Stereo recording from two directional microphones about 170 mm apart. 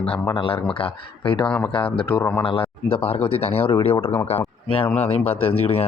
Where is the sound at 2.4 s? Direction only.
35° left (ahead or behind).